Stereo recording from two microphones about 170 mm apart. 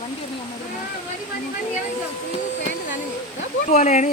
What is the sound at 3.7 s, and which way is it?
Speech, 45° left (ahead or behind).